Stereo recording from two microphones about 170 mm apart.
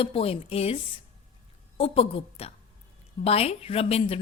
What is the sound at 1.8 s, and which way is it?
A woman's voice, 35° left (ahead or behind).